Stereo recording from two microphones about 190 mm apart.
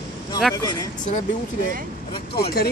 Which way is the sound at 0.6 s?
20° left (ahead or behind).